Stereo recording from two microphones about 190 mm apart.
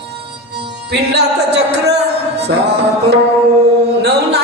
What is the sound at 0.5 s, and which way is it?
Music, 60° right (ahead or behind).